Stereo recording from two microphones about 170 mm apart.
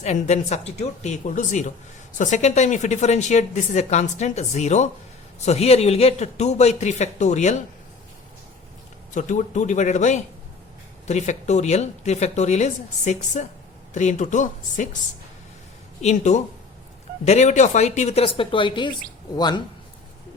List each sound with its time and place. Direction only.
0.0 s a woman's voice: 40° left (ahead or behind)
9.1 s a woman's voice: 45° left (ahead or behind)
16.0 s a woman's voice: 40° left (ahead or behind); by 19.6 s 25° left (ahead or behind)